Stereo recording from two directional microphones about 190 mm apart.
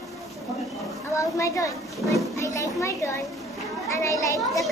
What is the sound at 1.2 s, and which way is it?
Speech, 15° left (ahead or behind).